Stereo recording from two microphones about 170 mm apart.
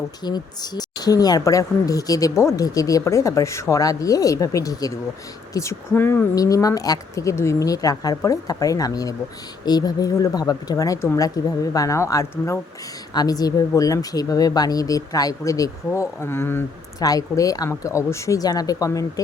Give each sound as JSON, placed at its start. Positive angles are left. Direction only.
{"t": 0.2, "sound": "speech", "side_deg": 25}